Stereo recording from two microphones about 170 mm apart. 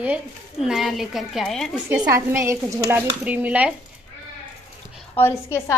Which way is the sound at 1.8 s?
15° right (ahead or behind).